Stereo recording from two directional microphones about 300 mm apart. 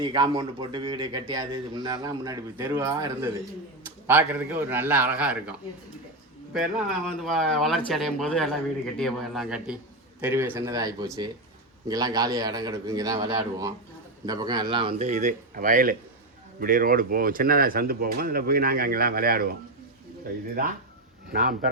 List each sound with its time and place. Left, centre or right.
0.0 s a man's voice: centre; by 19.5 s right